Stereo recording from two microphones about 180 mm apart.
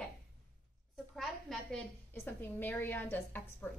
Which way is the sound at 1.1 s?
Centre (ahead or behind).